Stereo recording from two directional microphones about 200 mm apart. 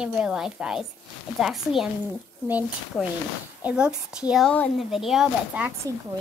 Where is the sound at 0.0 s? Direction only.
5° right (ahead or behind).